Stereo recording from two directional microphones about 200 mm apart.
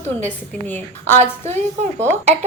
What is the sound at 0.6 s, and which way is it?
Speech, 10° left (ahead or behind).